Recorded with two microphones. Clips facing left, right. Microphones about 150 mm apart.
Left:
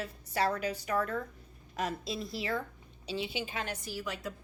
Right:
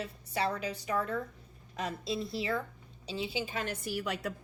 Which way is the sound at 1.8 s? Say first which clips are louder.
Even; 25° right (ahead or behind).